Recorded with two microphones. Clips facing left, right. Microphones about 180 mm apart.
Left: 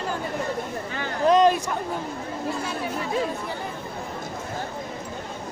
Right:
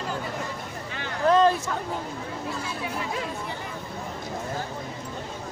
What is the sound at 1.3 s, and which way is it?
Speech, 15° left (ahead or behind).